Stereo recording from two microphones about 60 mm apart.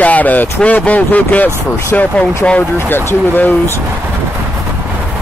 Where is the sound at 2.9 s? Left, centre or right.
Left.